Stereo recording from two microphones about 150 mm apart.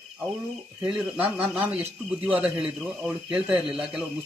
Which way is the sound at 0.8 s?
5° right (ahead or behind).